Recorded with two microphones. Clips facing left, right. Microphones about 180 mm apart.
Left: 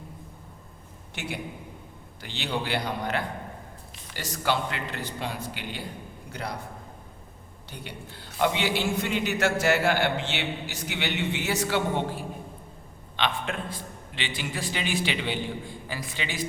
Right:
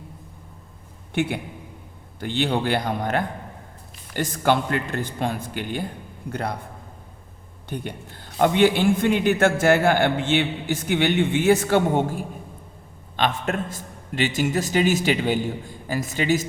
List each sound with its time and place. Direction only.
1.1 s a man's voice: 55° right (ahead or behind)
7.7 s a man's voice: 50° right (ahead or behind)